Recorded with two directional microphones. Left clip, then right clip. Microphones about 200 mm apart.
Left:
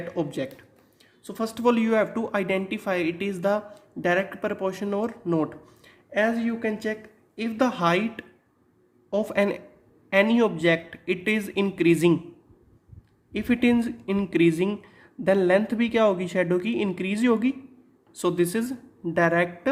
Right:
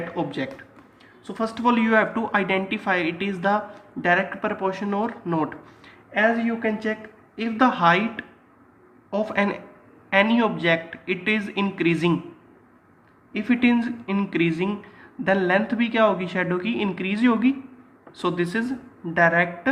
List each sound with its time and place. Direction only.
0.1 s speech: 50° left (ahead or behind)
13.3 s speech: 50° left (ahead or behind)